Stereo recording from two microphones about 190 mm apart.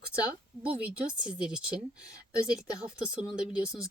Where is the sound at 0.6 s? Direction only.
5° right (ahead or behind).